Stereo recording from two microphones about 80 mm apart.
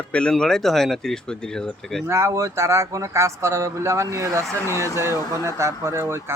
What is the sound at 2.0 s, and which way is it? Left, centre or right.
Speech, right.